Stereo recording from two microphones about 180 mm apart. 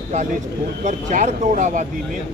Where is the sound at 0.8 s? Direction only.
45° right (ahead or behind).